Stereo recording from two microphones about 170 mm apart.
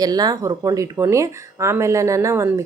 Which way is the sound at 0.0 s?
20° right (ahead or behind).